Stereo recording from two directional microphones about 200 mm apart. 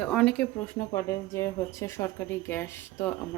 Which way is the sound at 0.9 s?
15° left (ahead or behind).